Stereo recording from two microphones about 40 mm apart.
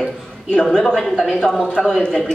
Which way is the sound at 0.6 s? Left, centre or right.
Centre.